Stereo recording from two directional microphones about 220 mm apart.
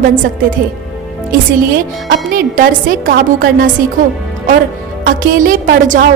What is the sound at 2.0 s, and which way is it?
A woman's voice, 40° right (ahead or behind).